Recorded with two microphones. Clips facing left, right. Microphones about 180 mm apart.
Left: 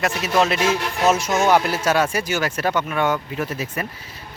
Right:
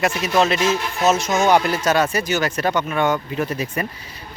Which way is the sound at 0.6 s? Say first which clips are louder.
Right 1 dB; 55° left (ahead or behind).